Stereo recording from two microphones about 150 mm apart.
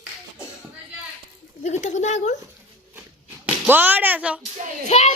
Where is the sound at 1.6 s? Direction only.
50° left (ahead or behind).